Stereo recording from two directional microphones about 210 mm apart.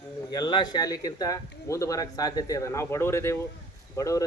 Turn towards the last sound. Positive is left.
turn(degrees=15)  # may be behind; listen again after turning